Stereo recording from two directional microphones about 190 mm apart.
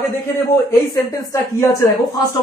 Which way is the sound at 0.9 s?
15° left (ahead or behind).